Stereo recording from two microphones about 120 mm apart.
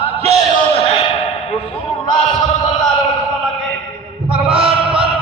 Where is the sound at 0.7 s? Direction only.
55° left (ahead or behind).